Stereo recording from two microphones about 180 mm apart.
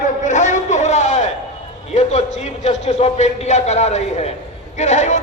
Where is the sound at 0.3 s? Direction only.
40° left (ahead or behind).